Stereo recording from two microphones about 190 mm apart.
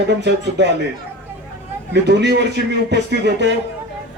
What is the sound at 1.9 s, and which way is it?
A man's voice, 65° right (ahead or behind).